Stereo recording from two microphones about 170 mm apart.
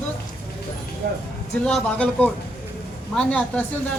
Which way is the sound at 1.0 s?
90° right.